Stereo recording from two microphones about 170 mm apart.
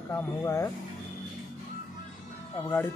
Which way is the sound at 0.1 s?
15° left (ahead or behind).